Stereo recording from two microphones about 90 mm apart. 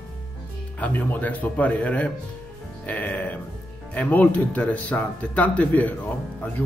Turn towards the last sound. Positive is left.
turn(degrees=15)  # may be behind; listen again after turning